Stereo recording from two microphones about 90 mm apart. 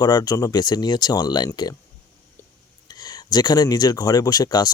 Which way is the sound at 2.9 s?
50° left (ahead or behind).